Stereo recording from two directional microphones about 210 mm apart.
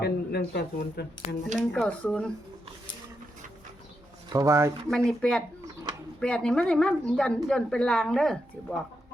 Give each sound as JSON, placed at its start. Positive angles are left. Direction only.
{"t": 0.0, "sound": "speech", "side_deg": 50}
{"t": 1.5, "sound": "a woman's voice", "side_deg": 5}
{"t": 4.3, "sound": "speech", "side_deg": -15}
{"t": 4.9, "sound": "a woman's voice", "side_deg": 0}